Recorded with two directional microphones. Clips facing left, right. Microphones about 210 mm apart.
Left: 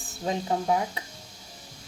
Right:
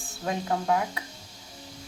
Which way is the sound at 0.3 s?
20° left (ahead or behind).